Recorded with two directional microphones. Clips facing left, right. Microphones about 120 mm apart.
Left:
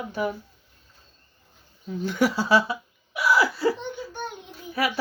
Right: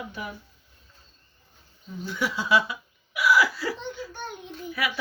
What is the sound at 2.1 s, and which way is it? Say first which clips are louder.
Speech: left 3 dB; 40° left (ahead or behind).